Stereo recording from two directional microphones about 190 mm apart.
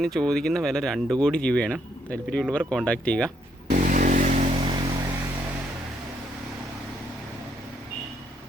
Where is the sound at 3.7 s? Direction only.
40° right (ahead or behind).